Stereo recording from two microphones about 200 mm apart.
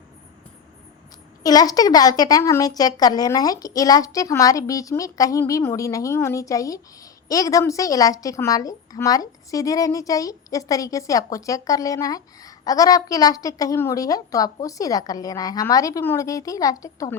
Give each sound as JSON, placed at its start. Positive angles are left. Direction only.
{"t": 1.5, "sound": "a woman's voice", "side_deg": 20}